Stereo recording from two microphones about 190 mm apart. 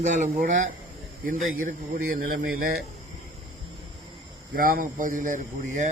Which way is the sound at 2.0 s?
45° right (ahead or behind).